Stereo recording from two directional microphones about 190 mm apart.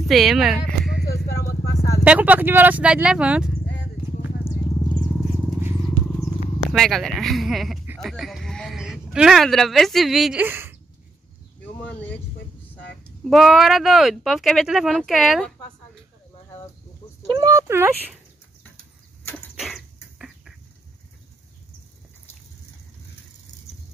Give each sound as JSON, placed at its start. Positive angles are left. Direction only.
{"t": 0.1, "sound": "speech", "side_deg": 0}
{"t": 1.0, "sound": "vehicle", "side_deg": 50}
{"t": 2.0, "sound": "speech", "side_deg": -10}
{"t": 6.7, "sound": "speech", "side_deg": 0}
{"t": 11.8, "sound": "a sound", "side_deg": 5}
{"t": 13.2, "sound": "speech", "side_deg": 0}
{"t": 17.3, "sound": "a sound", "side_deg": -20}
{"t": 19.6, "sound": "cough", "side_deg": 0}